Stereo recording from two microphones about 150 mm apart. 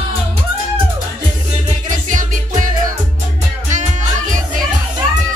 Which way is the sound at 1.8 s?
60° right (ahead or behind).